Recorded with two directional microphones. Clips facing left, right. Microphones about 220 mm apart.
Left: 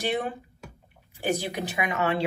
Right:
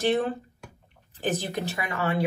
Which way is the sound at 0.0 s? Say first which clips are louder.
Right 4 dB; 15° left (ahead or behind).